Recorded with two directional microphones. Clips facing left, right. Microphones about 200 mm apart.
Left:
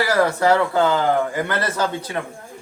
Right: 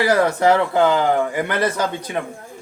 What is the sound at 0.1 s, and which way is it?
A man's voice, 20° right (ahead or behind).